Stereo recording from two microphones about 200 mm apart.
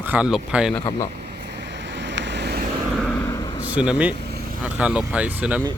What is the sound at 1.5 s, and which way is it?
Vehicle, 60° right (ahead or behind).